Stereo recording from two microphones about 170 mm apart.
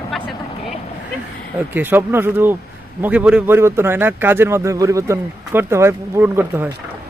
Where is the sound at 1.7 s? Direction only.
10° right (ahead or behind).